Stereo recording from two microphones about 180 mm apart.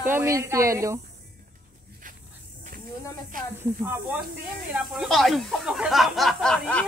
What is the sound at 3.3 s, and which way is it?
Speech, 50° right (ahead or behind).